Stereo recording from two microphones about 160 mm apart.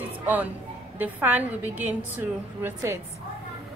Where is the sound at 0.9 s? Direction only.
10° right (ahead or behind).